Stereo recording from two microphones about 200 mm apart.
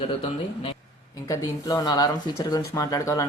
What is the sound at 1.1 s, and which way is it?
Speech, 15° left (ahead or behind).